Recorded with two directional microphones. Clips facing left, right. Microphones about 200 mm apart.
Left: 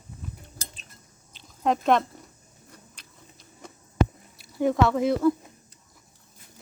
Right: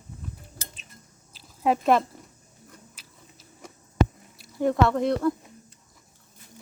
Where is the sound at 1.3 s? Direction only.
5° right (ahead or behind).